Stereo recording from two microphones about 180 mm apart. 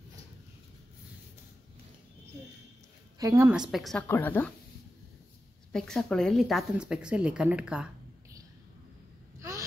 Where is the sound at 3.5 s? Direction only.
Centre (ahead or behind).